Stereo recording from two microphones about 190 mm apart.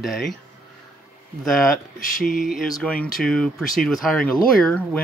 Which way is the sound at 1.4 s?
Centre (ahead or behind).